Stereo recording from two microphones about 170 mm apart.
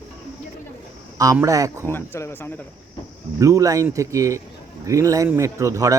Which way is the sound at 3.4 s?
20° right (ahead or behind).